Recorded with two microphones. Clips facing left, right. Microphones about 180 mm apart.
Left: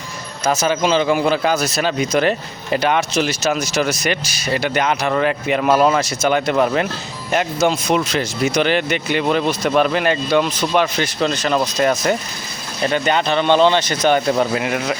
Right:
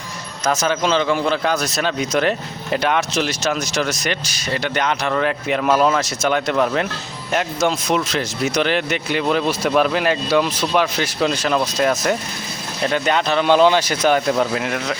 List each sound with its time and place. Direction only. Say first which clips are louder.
0.4 s speech: left 2 dB; 5° left (ahead or behind)